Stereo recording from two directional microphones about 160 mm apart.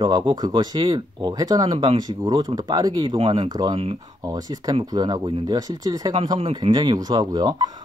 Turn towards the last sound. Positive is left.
turn(degrees=-25)  # may be behind; listen again after turning